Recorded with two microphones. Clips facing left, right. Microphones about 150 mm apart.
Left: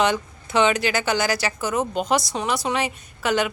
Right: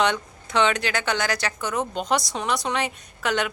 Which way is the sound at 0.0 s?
5° left (ahead or behind).